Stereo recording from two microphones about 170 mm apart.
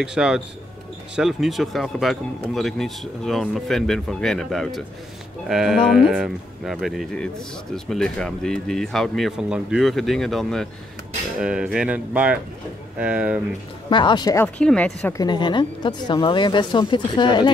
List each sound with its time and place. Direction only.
0.0 s speech: 5° right (ahead or behind)
13.8 s speech: 30° left (ahead or behind)
14.6 s speech: 5° left (ahead or behind)
15.1 s speech: 25° left (ahead or behind)